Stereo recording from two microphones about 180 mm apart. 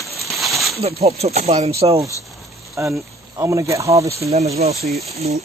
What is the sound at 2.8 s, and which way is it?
Speech, 15° right (ahead or behind).